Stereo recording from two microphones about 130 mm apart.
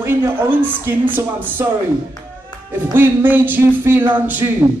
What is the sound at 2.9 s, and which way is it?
Music, 15° right (ahead or behind).